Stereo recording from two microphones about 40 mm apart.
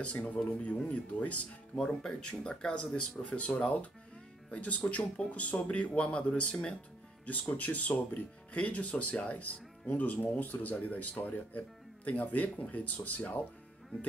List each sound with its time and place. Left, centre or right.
0.0 s speech: left
1.8 s speech: left
7.2 s speech: left